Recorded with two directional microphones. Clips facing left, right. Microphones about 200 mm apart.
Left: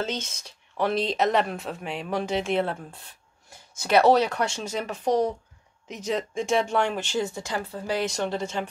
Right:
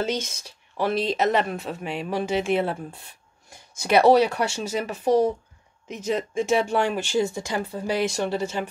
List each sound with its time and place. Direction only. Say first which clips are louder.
0.0 s speech: right 4 dB; 10° right (ahead or behind)